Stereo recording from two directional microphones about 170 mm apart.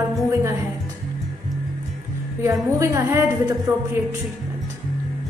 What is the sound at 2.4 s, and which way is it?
A woman's voice, 15° right (ahead or behind).